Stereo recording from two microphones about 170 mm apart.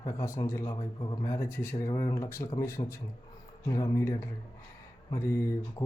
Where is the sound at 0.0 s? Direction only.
20° left (ahead or behind).